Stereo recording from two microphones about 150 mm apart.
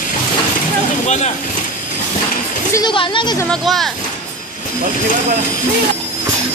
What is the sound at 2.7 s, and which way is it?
Speech, 30° left (ahead or behind).